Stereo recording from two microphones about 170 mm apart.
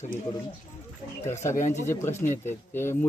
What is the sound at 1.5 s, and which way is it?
Speech, 45° left (ahead or behind).